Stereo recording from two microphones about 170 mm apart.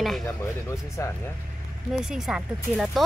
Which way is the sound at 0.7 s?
15° left (ahead or behind).